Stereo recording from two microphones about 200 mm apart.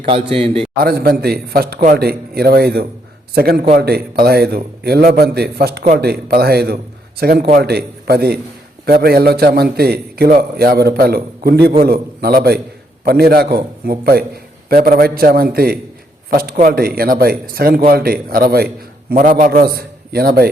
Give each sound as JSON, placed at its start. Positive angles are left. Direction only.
{"t": 0.0, "sound": "a man's voice", "side_deg": -25}
{"t": 0.8, "sound": "a man's voice", "side_deg": -50}